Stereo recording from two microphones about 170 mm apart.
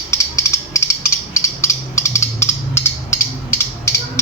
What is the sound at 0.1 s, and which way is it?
Mechanisms, 15° left (ahead or behind).